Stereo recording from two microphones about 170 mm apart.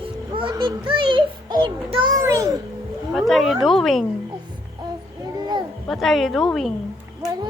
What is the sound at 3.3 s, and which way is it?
Speech, centre (ahead or behind).